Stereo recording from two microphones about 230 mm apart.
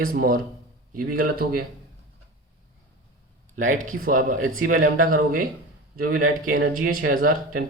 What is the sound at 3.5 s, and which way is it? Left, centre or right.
Speech, right.